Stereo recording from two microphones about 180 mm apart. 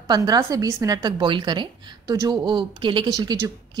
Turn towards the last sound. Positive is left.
turn(degrees=-20)  # may be behind; listen again after turning